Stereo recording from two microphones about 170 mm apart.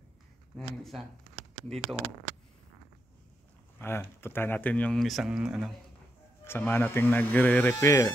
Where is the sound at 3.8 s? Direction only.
15° left (ahead or behind); by 5.7 s 5° right (ahead or behind).